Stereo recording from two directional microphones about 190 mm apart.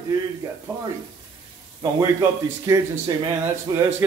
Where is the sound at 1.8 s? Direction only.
20° right (ahead or behind).